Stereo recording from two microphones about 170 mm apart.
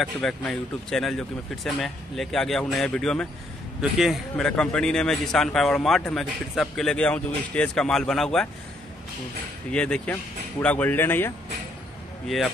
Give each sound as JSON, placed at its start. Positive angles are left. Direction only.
{"t": 0.0, "sound": "a man's voice", "side_deg": 5}
{"t": 9.7, "sound": "speech", "side_deg": 5}